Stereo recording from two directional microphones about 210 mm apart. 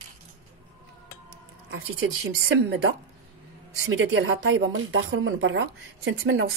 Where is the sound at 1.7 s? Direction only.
75° right (ahead or behind).